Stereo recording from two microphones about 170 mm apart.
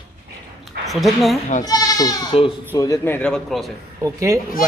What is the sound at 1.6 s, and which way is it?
Speech, 20° left (ahead or behind).